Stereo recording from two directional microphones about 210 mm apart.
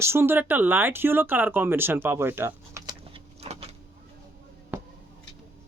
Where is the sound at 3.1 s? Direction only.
30° right (ahead or behind).